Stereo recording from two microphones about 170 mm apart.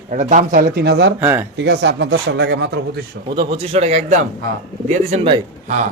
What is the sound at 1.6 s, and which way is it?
Speech, 90° right.